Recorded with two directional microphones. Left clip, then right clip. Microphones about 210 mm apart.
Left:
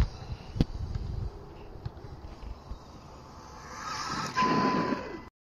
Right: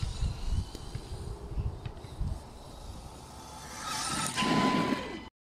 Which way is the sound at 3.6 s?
20° right (ahead or behind).